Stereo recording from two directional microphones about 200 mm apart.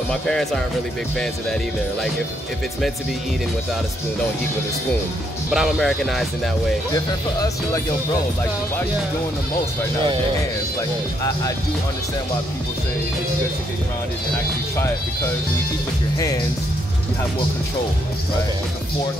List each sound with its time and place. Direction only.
0.1 s speech: 5° left (ahead or behind)
5.5 s speech: centre (ahead or behind)
7.3 s speech: 15° left (ahead or behind)